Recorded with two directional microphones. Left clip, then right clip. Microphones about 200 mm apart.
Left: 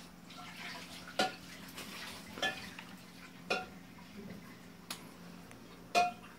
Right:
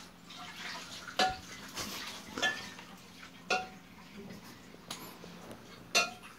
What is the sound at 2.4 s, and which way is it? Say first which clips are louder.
Dishes: right 4 dB; 50° right (ahead or behind).